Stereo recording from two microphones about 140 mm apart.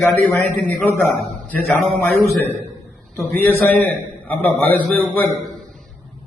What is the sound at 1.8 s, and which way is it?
Speech, centre (ahead or behind).